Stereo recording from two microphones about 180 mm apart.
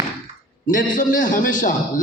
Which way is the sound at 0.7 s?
50° left (ahead or behind).